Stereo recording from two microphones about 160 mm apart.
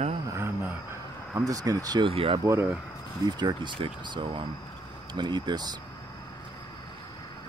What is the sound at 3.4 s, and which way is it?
A man's voice, 30° right (ahead or behind).